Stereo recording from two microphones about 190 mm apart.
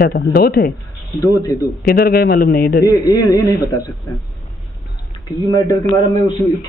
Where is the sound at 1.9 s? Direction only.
55° left (ahead or behind).